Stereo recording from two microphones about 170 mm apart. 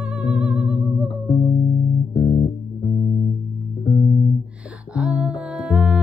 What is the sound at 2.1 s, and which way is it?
Music, 30° left (ahead or behind).